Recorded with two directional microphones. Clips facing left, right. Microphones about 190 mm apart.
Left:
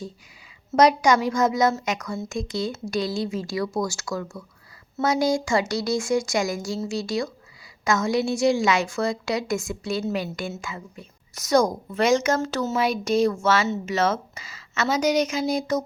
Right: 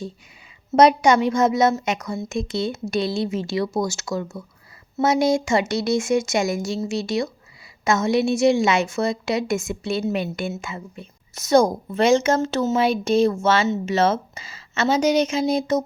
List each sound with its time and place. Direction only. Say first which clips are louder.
0.7 s a woman's voice: right 3 dB; 25° right (ahead or behind)